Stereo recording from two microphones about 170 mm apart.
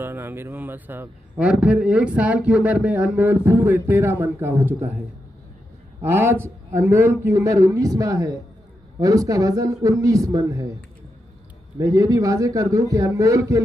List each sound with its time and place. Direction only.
0.0 s a man's voice: 15° right (ahead or behind)
6.0 s a man's voice: 15° right (ahead or behind)
11.8 s a man's voice: 20° right (ahead or behind)